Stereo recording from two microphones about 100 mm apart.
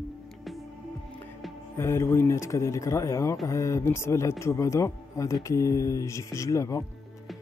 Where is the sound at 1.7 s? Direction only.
25° left (ahead or behind).